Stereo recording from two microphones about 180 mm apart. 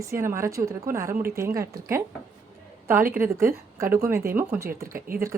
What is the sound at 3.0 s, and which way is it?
Speech, 50° right (ahead or behind).